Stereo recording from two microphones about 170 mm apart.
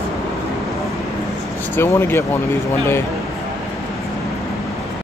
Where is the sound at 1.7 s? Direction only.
15° left (ahead or behind).